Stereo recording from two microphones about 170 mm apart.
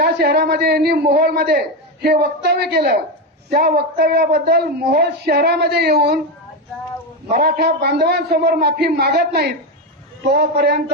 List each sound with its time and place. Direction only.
0.0 s a man's voice: 70° right (ahead or behind)
7.3 s a man's voice: 65° right (ahead or behind)